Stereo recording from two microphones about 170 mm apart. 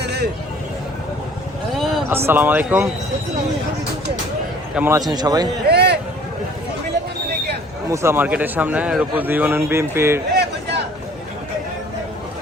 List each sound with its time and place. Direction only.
0.0 s hubbub: 75° right (ahead or behind)
2.0 s a man's voice: 15° right (ahead or behind)
4.7 s a man's voice: 10° right (ahead or behind)
4.9 s a man's voice: 25° right (ahead or behind)
5.6 s a sound: 75° right (ahead or behind)
7.9 s a man's voice: 15° right (ahead or behind)
10.3 s a sound: 80° right